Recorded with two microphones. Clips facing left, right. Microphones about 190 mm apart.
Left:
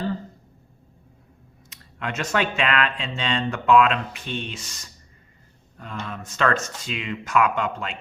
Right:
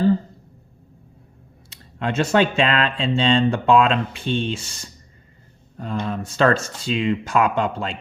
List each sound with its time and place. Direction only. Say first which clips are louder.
1.7 s speech: right 7 dB; 30° right (ahead or behind)